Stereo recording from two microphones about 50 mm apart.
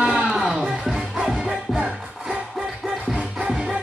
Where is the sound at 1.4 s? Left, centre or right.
Centre.